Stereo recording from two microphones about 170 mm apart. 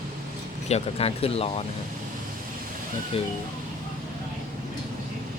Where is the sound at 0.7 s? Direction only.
35° left (ahead or behind).